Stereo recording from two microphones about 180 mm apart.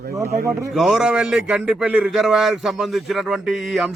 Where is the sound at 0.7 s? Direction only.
Centre (ahead or behind).